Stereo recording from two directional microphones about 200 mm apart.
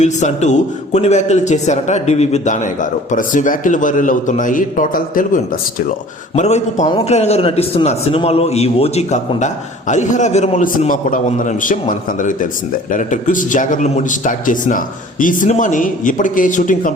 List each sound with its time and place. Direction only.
0.0 s a man's voice: 35° left (ahead or behind)